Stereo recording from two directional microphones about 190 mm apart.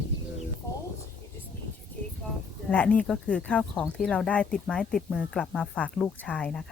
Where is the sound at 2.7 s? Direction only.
5° left (ahead or behind).